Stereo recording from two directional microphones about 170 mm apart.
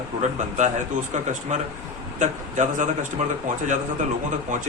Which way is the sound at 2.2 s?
45° right (ahead or behind).